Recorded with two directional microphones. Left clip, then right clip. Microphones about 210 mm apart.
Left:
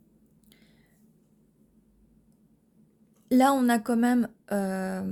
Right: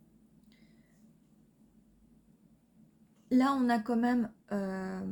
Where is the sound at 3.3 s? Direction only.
55° left (ahead or behind).